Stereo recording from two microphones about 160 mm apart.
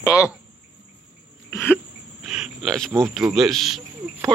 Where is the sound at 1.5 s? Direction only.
15° left (ahead or behind).